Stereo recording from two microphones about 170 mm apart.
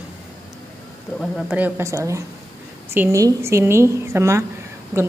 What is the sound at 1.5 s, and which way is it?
A woman's voice, 15° right (ahead or behind).